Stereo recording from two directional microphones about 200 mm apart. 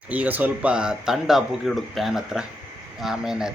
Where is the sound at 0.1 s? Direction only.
10° right (ahead or behind).